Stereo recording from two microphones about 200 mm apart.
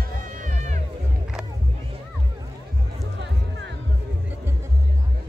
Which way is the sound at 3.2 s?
60° right (ahead or behind).